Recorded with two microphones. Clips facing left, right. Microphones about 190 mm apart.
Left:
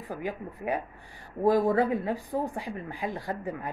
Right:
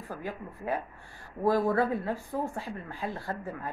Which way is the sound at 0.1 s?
15° left (ahead or behind).